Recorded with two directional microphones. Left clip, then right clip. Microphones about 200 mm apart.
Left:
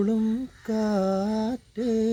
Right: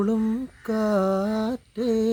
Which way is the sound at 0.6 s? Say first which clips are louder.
Right 3 dB; 20° right (ahead or behind).